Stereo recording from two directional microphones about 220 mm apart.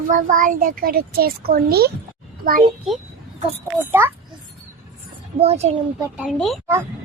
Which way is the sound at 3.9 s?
10° right (ahead or behind).